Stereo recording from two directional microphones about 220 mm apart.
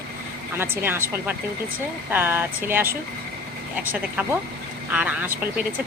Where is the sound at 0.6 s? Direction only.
10° right (ahead or behind).